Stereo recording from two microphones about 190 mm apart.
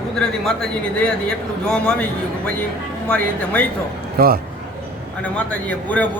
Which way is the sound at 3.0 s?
5° left (ahead or behind).